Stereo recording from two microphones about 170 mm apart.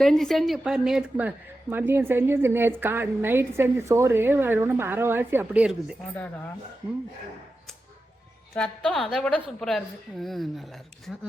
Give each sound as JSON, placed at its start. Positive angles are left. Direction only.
{"t": 0.0, "sound": "a woman's voice", "side_deg": 5}
{"t": 6.1, "sound": "speech", "side_deg": 10}
{"t": 8.5, "sound": "a woman's voice", "side_deg": 5}